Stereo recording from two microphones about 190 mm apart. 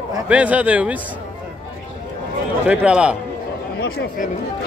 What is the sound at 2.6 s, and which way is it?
Speech, 5° right (ahead or behind).